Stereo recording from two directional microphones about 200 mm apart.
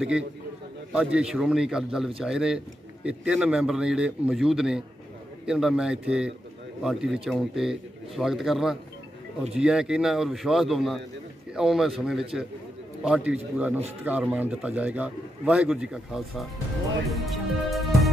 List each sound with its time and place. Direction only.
0.9 s a man's voice: 5° right (ahead or behind)
17.1 s music: centre (ahead or behind)